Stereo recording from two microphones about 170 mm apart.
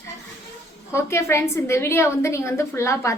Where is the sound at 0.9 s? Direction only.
15° left (ahead or behind).